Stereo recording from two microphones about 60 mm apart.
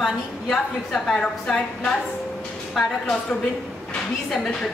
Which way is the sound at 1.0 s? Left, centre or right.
Centre.